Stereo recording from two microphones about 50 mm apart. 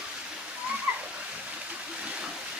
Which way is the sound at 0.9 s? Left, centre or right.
Right.